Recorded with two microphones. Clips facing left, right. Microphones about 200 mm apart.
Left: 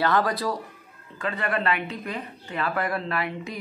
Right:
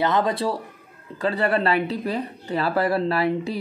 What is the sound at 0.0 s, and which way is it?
Speech, 20° right (ahead or behind).